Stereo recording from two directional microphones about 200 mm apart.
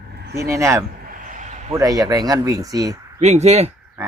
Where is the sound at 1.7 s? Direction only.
20° right (ahead or behind).